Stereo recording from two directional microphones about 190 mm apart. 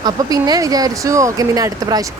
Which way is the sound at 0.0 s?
20° right (ahead or behind).